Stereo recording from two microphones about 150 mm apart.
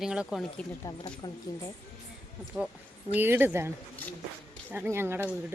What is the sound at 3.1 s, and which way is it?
Speech, 15° right (ahead or behind).